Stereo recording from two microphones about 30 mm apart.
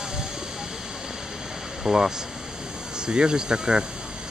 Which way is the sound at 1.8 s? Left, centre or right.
Centre.